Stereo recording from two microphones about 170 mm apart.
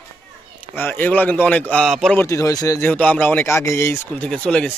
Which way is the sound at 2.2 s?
20° left (ahead or behind).